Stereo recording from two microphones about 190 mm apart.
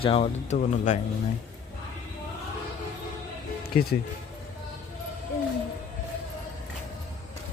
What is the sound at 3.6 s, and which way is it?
Music, 55° left (ahead or behind).